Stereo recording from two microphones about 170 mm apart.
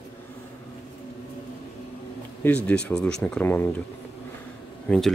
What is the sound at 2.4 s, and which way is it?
Speech, 10° left (ahead or behind).